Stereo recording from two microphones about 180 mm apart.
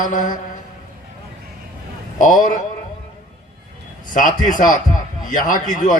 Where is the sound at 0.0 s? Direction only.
45° left (ahead or behind).